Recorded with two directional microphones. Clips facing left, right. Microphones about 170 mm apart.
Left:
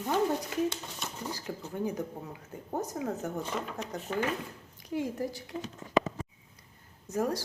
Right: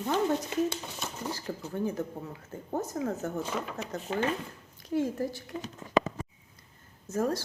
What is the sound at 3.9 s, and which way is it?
A woman's voice, 15° left (ahead or behind).